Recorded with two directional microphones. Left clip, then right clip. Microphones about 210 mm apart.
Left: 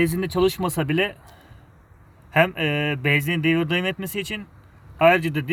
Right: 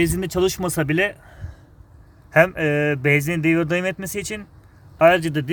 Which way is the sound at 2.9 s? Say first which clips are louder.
Right 2 dB; 15° right (ahead or behind).